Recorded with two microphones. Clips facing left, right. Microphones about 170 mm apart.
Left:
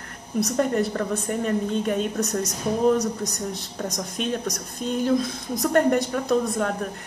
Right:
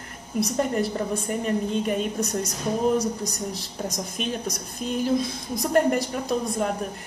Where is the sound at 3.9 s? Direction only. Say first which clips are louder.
Left 4 dB; 5° right (ahead or behind).